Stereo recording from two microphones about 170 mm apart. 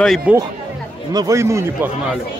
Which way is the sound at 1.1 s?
20° right (ahead or behind).